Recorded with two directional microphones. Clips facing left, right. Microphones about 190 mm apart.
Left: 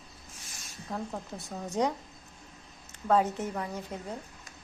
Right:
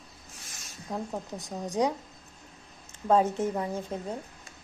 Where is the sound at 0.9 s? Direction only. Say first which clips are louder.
Right 2 dB; 15° right (ahead or behind).